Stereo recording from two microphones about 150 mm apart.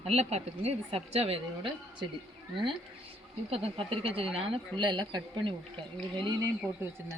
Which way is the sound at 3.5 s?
40° right (ahead or behind).